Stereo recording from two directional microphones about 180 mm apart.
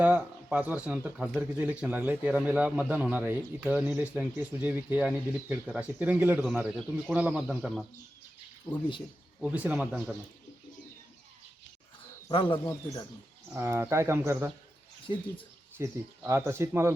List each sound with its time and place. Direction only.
0.0 s a man's voice: 10° right (ahead or behind)
9.5 s a man's voice: 10° right (ahead or behind)
12.3 s speech: 25° left (ahead or behind)
13.5 s a man's voice: 15° right (ahead or behind)
15.0 s speech: 30° left (ahead or behind)
15.8 s a man's voice: 15° right (ahead or behind)